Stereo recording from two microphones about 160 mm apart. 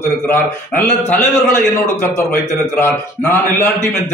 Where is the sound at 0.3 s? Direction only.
10° left (ahead or behind).